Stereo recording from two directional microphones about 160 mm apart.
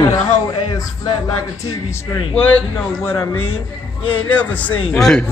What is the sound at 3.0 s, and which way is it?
A man's voice, 15° left (ahead or behind).